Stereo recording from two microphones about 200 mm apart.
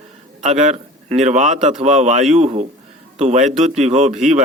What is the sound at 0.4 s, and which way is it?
Speech, 35° right (ahead or behind).